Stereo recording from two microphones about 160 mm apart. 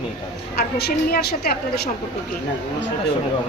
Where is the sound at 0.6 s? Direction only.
75° left (ahead or behind).